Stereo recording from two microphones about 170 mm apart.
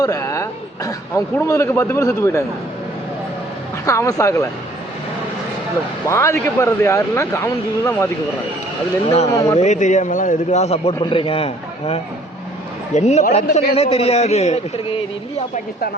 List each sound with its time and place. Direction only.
0.0 s a man's voice: 20° left (ahead or behind)
3.8 s speech: 20° left (ahead or behind)
6.1 s a man's voice: 15° left (ahead or behind)
9.0 s a man's voice: 40° left (ahead or behind)
9.3 s a man's voice: 20° left (ahead or behind)
9.6 s a man's voice: 45° left (ahead or behind)